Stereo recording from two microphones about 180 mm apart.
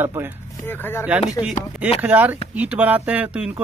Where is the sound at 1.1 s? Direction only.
10° right (ahead or behind).